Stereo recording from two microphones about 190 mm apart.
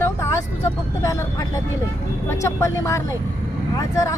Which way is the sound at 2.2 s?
15° left (ahead or behind).